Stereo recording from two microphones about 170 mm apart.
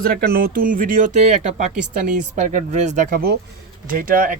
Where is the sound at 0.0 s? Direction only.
60° right (ahead or behind).